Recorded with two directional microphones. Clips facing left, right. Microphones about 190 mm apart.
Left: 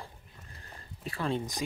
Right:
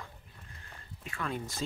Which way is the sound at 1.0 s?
30° left (ahead or behind).